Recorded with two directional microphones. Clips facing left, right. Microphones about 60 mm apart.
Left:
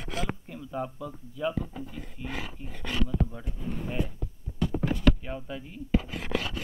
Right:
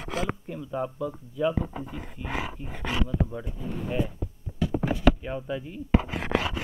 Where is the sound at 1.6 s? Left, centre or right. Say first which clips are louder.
Right 4 dB; right.